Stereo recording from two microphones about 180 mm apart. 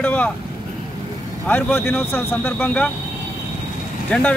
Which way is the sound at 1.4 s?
10° left (ahead or behind).